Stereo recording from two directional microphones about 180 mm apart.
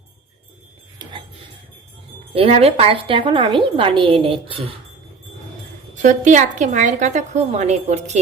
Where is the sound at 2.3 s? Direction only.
35° right (ahead or behind).